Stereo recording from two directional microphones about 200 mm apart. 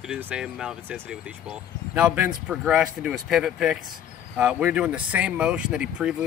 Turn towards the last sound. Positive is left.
turn(degrees=-5)  # may be behind; listen again after turning